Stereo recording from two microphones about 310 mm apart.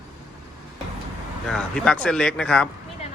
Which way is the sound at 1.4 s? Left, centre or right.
Centre.